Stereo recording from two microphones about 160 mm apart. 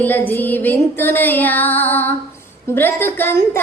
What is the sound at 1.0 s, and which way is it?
Speech, 10° left (ahead or behind).